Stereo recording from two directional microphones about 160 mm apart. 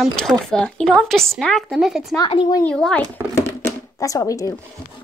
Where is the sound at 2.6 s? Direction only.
5° left (ahead or behind).